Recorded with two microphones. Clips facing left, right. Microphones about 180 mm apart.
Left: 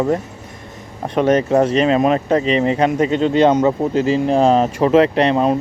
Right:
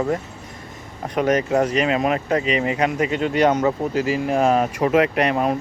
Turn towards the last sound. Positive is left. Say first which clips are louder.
# left 5 dB
turn(degrees=25)  # may be behind; listen again after turning